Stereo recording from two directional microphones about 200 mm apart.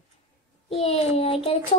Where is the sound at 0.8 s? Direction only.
30° left (ahead or behind).